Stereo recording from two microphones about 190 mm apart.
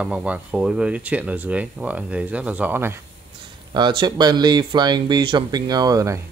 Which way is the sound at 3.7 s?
25° right (ahead or behind).